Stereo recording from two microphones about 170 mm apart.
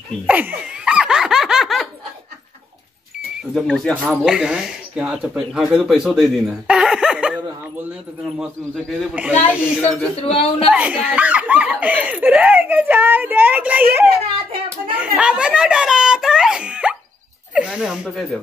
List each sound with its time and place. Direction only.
0.3 s laughter: 10° right (ahead or behind)
3.5 s speech: centre (ahead or behind)
9.5 s a woman's voice: 10° left (ahead or behind)
10.2 s a woman's voice: 35° left (ahead or behind)
10.7 s speech: 5° right (ahead or behind)